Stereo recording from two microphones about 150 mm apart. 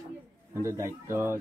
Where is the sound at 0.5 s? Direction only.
20° right (ahead or behind).